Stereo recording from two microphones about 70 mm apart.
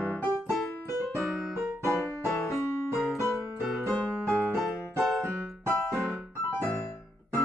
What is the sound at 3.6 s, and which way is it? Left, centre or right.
Music, centre.